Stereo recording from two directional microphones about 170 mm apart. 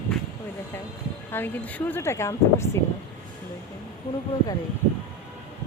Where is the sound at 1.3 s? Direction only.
10° left (ahead or behind).